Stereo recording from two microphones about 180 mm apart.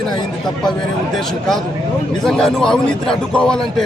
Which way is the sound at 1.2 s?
Centre (ahead or behind).